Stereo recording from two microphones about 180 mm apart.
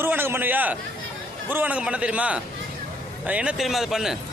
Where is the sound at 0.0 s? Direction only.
10° right (ahead or behind).